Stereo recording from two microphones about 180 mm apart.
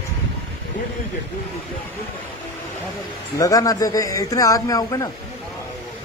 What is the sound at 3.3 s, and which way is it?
Speech, 20° left (ahead or behind).